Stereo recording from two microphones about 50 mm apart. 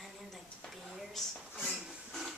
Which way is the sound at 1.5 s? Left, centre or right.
Centre.